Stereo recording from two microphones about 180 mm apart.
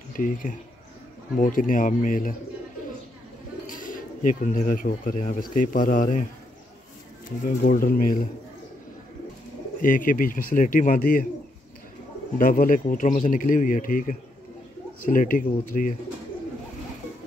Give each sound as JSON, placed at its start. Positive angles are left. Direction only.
{"t": 0.1, "sound": "speech", "side_deg": 50}
{"t": 3.6, "sound": "speech", "side_deg": 50}
{"t": 7.6, "sound": "speech", "side_deg": 50}
{"t": 9.8, "sound": "speech", "side_deg": 50}
{"t": 12.4, "sound": "speech", "side_deg": 50}